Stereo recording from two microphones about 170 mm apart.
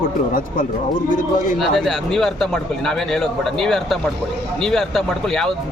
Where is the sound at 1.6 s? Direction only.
Centre (ahead or behind).